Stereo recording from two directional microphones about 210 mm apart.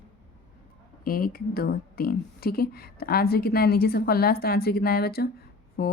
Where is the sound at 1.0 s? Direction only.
45° left (ahead or behind).